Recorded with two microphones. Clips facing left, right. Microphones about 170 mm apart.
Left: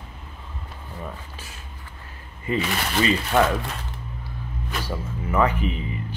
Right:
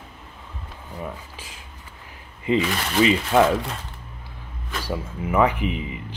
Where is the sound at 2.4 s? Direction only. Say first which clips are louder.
Right 3 dB; 15° right (ahead or behind).